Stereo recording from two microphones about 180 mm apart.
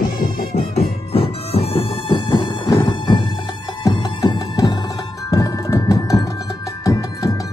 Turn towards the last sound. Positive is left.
turn(degrees=20)  # may be behind; listen again after turning